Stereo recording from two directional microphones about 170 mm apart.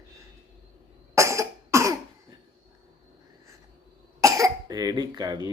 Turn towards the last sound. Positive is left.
turn(degrees=-25)  # may be behind; listen again after turning